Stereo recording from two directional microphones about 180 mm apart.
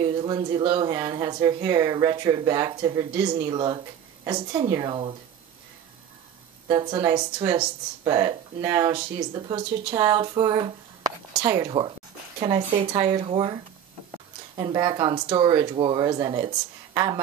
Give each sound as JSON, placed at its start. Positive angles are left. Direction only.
{"t": 0.0, "sound": "speech", "side_deg": -25}
{"t": 6.7, "sound": "speech", "side_deg": -25}
{"t": 14.6, "sound": "a woman's voice", "side_deg": -25}